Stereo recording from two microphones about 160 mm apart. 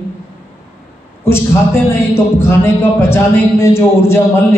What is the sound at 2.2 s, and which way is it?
A man's voice, 15° left (ahead or behind).